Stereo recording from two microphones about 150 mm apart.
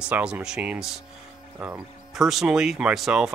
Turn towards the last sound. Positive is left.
turn(degrees=-5)  # may be behind; listen again after turning